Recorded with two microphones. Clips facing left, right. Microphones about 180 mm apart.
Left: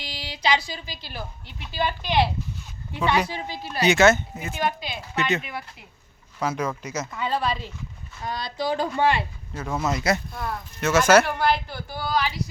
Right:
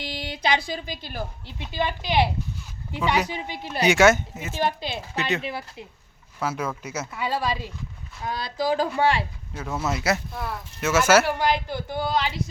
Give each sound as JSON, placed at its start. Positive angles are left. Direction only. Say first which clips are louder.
{"t": 0.0, "sound": "speech", "louder": "right 1 dB", "side_deg": -55}
{"t": 1.7, "sound": "speech", "louder": "even", "side_deg": -15}
{"t": 4.5, "sound": "speech", "louder": "right 2 dB", "side_deg": -30}
{"t": 6.4, "sound": "speech", "louder": "left 2 dB", "side_deg": -5}